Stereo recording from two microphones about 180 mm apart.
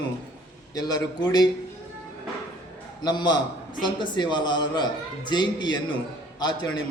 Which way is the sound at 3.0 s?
25° left (ahead or behind).